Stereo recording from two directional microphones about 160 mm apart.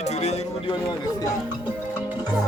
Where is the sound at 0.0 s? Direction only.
45° left (ahead or behind).